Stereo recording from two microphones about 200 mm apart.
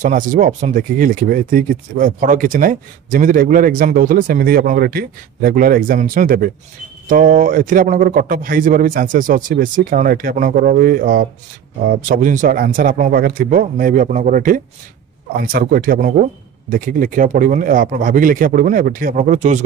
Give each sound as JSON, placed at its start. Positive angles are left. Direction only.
{"t": 0.0, "sound": "speech", "side_deg": -40}